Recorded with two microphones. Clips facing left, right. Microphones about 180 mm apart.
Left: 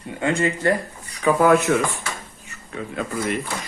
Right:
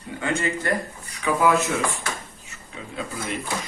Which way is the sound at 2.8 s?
55° left (ahead or behind).